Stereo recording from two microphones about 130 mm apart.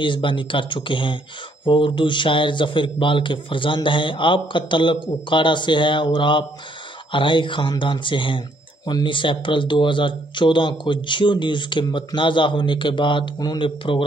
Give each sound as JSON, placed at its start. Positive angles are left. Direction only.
{"t": 0.0, "sound": "speech", "side_deg": 40}